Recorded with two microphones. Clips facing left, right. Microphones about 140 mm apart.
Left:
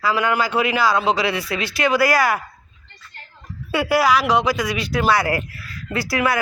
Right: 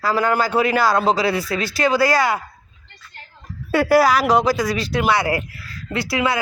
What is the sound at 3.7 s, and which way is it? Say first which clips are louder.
A man's voice: right 3 dB; 45° right (ahead or behind).